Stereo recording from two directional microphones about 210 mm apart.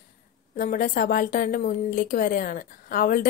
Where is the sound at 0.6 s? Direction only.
40° left (ahead or behind).